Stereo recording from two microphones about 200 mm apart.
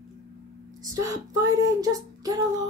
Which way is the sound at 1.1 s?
15° right (ahead or behind).